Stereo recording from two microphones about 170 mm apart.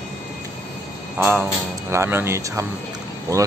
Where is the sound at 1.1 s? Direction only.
10° right (ahead or behind).